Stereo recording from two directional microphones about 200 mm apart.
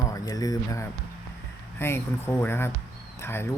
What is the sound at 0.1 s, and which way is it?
Speech, 20° left (ahead or behind).